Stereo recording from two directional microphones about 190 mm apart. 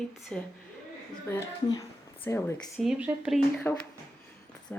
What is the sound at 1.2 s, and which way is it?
A woman's voice, 15° left (ahead or behind).